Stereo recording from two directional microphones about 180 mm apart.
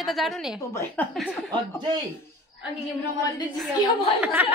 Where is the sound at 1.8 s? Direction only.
25° right (ahead or behind).